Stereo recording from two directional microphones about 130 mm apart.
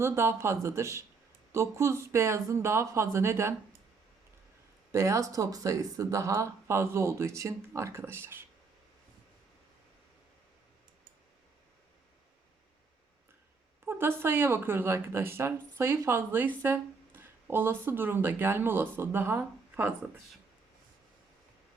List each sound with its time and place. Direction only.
0.0 s speech: 20° right (ahead or behind)
4.9 s speech: 25° right (ahead or behind)
13.8 s speech: 20° right (ahead or behind)